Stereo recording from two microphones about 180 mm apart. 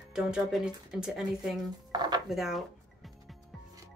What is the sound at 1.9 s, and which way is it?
Dishes, 25° right (ahead or behind).